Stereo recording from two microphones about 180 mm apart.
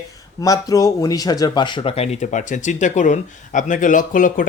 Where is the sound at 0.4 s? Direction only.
20° left (ahead or behind).